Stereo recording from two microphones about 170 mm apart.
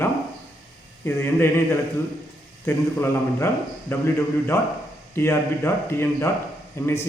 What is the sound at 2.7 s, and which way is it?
A man's voice, 15° left (ahead or behind).